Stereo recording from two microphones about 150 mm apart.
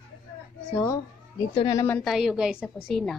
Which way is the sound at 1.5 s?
35° left (ahead or behind).